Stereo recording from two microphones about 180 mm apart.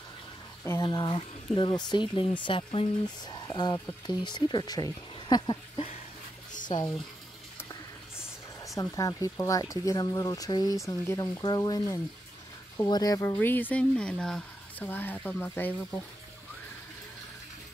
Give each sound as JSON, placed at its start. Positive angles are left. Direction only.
{"t": 0.8, "sound": "speech", "side_deg": 25}
{"t": 8.7, "sound": "speech", "side_deg": 20}